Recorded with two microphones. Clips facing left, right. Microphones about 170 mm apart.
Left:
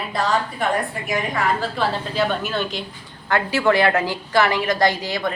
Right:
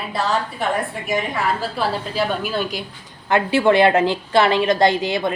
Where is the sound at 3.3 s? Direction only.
20° right (ahead or behind).